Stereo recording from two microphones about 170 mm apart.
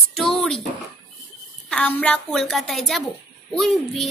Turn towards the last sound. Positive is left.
turn(degrees=0)  # may be behind; listen again after turning